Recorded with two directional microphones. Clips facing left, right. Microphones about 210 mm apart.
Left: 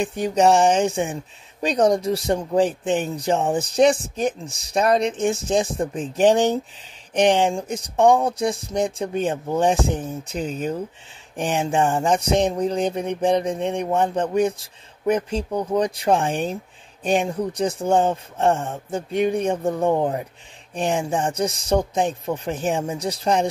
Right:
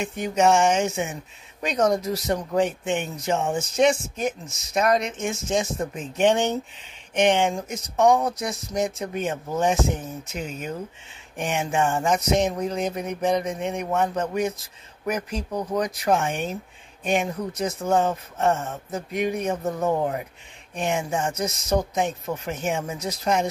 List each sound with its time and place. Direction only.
0.0 s speech: 35° left (ahead or behind)